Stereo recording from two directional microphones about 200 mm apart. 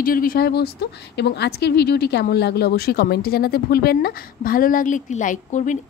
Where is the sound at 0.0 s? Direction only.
45° left (ahead or behind).